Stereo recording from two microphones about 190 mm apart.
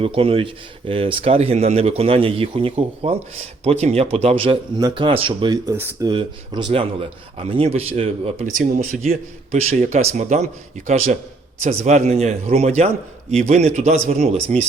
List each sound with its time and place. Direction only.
0.0 s speech: 30° right (ahead or behind)
5.7 s speech: 10° right (ahead or behind)
6.1 s speech: 25° right (ahead or behind)
8.5 s speech: 40° right (ahead or behind)